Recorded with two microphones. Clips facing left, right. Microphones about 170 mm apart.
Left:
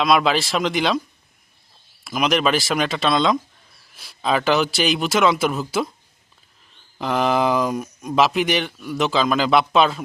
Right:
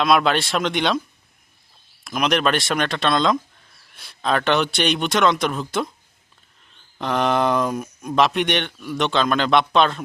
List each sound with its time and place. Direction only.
0.0 s speech: centre (ahead or behind)
2.0 s speech: centre (ahead or behind)
7.0 s speech: centre (ahead or behind)